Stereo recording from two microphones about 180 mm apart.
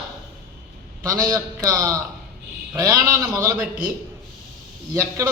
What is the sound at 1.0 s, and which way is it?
A man's voice, 20° right (ahead or behind).